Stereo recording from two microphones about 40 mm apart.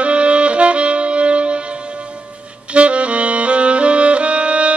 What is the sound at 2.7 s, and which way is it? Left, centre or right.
Saxophone, right.